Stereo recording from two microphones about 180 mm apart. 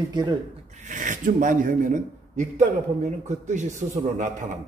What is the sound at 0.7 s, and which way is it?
Speech, 45° right (ahead or behind).